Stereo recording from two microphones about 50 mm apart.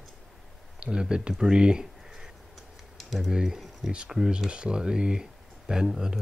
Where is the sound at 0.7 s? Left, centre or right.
Centre.